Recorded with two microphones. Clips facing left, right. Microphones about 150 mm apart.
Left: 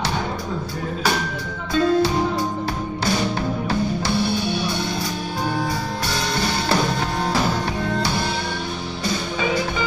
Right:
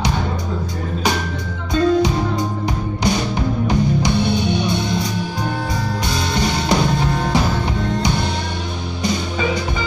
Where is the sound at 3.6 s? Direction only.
15° right (ahead or behind).